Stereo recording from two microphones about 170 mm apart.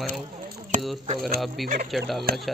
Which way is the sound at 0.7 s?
45° right (ahead or behind).